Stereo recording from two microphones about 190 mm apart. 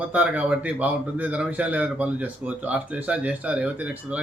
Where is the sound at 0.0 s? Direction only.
5° right (ahead or behind).